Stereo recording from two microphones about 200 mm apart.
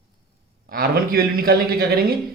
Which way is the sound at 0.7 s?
45° right (ahead or behind).